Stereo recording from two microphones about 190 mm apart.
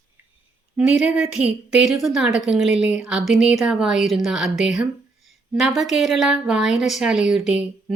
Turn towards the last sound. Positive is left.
turn(degrees=-5)  # may be behind; listen again after turning